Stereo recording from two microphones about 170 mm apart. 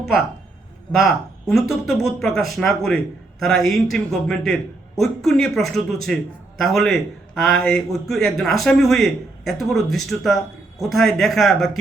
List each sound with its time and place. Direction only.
0.9 s a man's voice: centre (ahead or behind)